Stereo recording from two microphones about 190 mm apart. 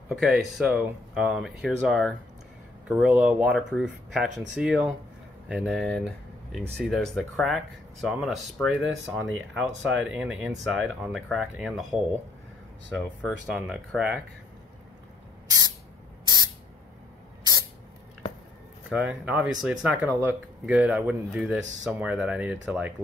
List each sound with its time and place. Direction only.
0.1 s speech: centre (ahead or behind)
13.5 s speech: 5° right (ahead or behind)
17.4 s spray: 20° right (ahead or behind)
18.9 s speech: 5° right (ahead or behind)